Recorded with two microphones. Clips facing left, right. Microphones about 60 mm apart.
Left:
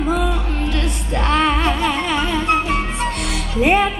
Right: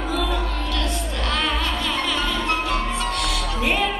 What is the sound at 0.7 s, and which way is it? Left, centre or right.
Music, left.